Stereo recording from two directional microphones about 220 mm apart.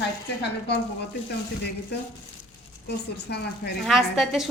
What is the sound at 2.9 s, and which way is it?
Speech, 50° left (ahead or behind).